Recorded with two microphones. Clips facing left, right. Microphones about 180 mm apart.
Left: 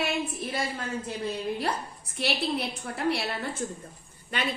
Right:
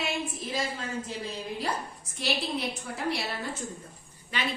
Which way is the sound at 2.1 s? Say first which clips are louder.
Left 2 dB; 65° left (ahead or behind).